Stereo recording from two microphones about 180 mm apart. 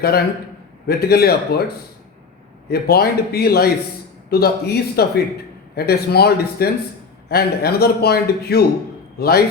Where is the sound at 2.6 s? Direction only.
60° left (ahead or behind).